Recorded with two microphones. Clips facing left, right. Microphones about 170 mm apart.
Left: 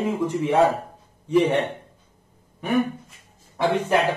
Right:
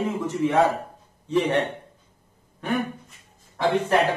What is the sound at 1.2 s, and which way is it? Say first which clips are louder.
Speech: left 3 dB; 10° left (ahead or behind).